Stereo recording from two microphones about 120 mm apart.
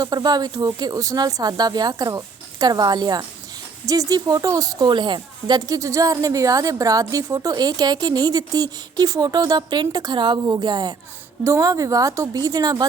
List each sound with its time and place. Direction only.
0.0 s a woman's voice: 35° right (ahead or behind)